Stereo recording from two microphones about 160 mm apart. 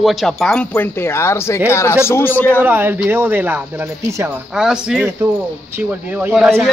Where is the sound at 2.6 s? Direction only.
15° right (ahead or behind).